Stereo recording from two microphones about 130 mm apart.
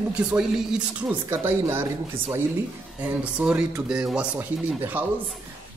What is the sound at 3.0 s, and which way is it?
Speech, 10° right (ahead or behind).